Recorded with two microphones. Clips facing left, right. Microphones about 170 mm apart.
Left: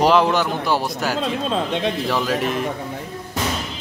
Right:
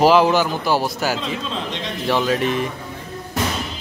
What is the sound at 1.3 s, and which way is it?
Speech, 55° left (ahead or behind).